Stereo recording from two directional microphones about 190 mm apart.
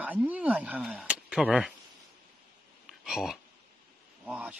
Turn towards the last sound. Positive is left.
turn(degrees=-5)  # may be behind; listen again after turning